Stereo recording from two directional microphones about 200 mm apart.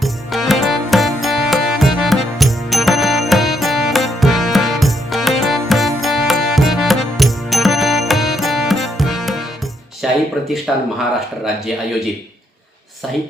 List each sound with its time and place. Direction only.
0.0 s music: centre (ahead or behind)
10.0 s a sound: 5° right (ahead or behind)
10.7 s speech: centre (ahead or behind)